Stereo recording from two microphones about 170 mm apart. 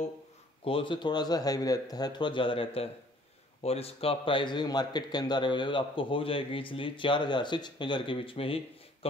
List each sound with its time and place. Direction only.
0.7 s a man's voice: 30° left (ahead or behind)